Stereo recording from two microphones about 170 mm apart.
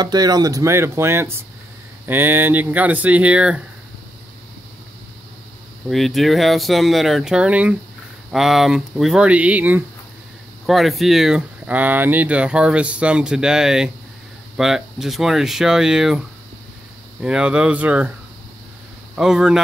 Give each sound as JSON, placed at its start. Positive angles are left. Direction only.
{"t": 0.0, "sound": "speech", "side_deg": -25}
{"t": 5.9, "sound": "speech", "side_deg": 0}
{"t": 19.1, "sound": "speech", "side_deg": -5}